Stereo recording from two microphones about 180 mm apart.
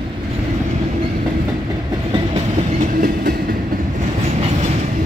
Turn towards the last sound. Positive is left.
turn(degrees=-50)  # may be behind; listen again after turning